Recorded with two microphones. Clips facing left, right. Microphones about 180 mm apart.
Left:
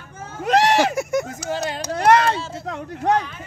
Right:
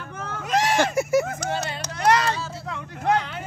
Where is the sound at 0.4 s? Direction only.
65° left (ahead or behind).